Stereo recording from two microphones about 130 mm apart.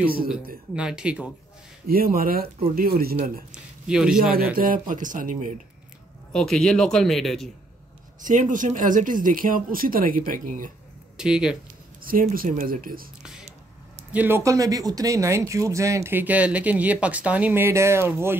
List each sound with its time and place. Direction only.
0.0 s speech: 10° right (ahead or behind)
2.0 s speech: 90° right
3.5 s a man's voice: 5° right (ahead or behind)
4.6 s speech: 90° right
6.3 s a man's voice: 5° left (ahead or behind)
8.2 s speech: 85° right
11.1 s a man's voice: 5° right (ahead or behind)
12.0 s speech: 90° right
13.2 s a sound: 5° right (ahead or behind)
14.1 s speech: 15° right (ahead or behind)